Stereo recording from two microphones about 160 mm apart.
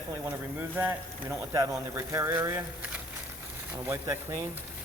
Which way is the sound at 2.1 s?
15° right (ahead or behind).